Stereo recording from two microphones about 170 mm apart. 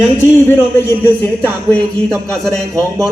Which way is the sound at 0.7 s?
10° left (ahead or behind).